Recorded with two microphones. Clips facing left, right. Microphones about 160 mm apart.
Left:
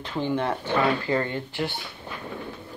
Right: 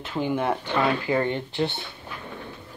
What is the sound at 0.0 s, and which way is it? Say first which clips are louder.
Speech: right 1 dB; 5° right (ahead or behind).